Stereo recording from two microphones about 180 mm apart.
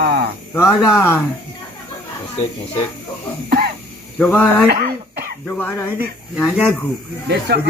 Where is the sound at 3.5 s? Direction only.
55° right (ahead or behind).